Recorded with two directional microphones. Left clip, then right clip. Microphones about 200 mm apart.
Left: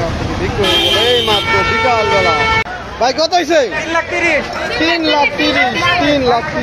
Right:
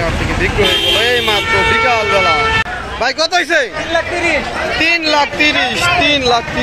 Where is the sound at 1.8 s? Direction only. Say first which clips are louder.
Even; centre (ahead or behind).